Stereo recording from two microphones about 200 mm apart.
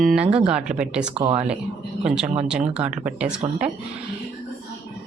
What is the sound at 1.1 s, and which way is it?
Speech, 25° right (ahead or behind).